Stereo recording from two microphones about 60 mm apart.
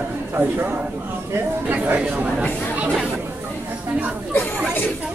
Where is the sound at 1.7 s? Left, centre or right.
Right.